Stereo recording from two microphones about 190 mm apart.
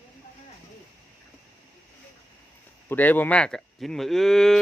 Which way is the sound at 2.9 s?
10° left (ahead or behind).